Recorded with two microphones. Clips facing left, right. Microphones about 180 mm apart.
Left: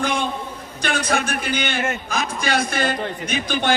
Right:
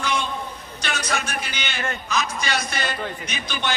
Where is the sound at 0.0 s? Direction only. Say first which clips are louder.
Left 3 dB; 55° left (ahead or behind).